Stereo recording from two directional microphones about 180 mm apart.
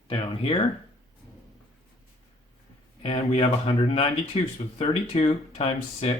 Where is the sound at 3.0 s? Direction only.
30° left (ahead or behind).